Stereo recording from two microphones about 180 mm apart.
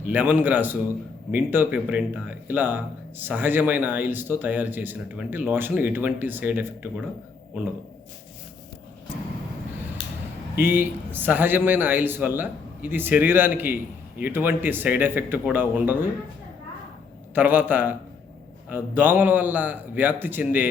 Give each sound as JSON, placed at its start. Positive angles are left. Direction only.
{"t": 0.0, "sound": "speech", "side_deg": -10}
{"t": 10.0, "sound": "a sound", "side_deg": 25}
{"t": 10.5, "sound": "speech", "side_deg": -10}
{"t": 17.3, "sound": "speech", "side_deg": -10}